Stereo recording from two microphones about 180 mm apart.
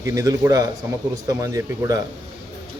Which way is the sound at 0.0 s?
15° right (ahead or behind).